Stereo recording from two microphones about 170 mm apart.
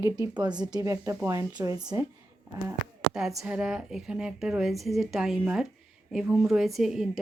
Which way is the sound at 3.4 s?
5° right (ahead or behind).